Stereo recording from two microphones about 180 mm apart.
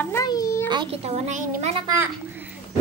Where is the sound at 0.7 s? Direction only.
30° right (ahead or behind).